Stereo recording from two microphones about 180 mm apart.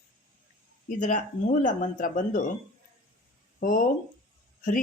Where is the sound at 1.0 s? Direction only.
45° left (ahead or behind).